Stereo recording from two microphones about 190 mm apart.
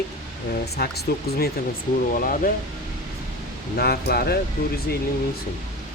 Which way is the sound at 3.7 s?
55° left (ahead or behind).